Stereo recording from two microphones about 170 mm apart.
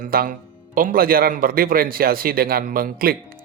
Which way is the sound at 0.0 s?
60° right (ahead or behind).